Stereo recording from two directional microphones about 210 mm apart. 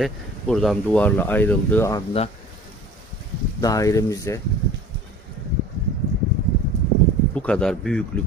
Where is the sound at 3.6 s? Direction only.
15° left (ahead or behind).